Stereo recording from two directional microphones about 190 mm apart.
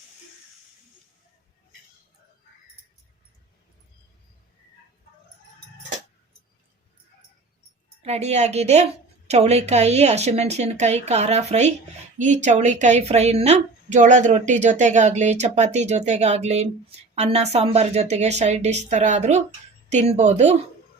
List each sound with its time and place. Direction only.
8.0 s a woman's voice: 35° right (ahead or behind)